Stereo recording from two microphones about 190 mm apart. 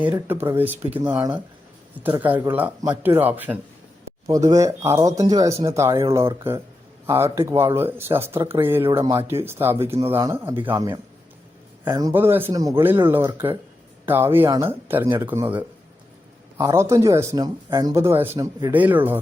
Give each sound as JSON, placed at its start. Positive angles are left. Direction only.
{"t": 0.0, "sound": "speech", "side_deg": -10}